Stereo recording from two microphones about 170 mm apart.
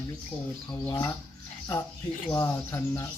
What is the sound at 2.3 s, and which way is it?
Speech, 15° left (ahead or behind).